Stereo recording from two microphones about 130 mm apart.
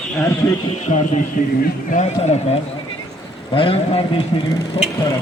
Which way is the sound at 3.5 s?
45° left (ahead or behind).